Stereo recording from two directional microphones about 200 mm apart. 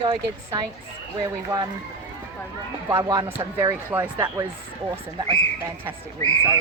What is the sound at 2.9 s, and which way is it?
Speech, 15° right (ahead or behind).